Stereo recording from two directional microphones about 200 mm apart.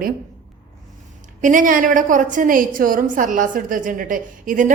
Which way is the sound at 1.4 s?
40° right (ahead or behind).